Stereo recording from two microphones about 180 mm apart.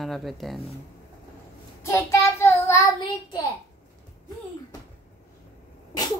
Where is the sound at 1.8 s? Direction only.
15° left (ahead or behind).